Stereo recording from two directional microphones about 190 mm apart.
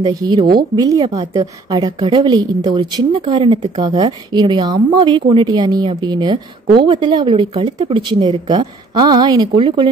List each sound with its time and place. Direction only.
0.1 s a woman's voice: 20° right (ahead or behind)